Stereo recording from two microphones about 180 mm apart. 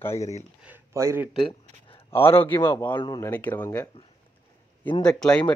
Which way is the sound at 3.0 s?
25° left (ahead or behind).